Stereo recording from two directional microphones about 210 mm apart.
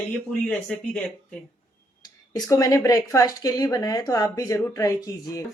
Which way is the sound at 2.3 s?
15° left (ahead or behind).